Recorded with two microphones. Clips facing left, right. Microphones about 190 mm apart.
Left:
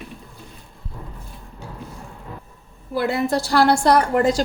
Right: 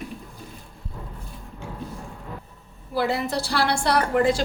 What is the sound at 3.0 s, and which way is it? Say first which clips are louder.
A woman's voice: left 3 dB; 50° left (ahead or behind).